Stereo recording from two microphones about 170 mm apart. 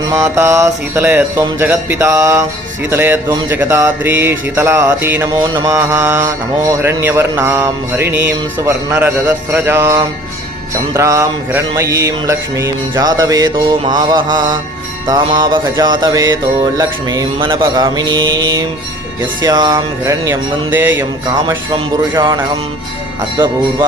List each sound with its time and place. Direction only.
0.1 s mantra: 15° right (ahead or behind)
21.7 s mantra: 25° right (ahead or behind)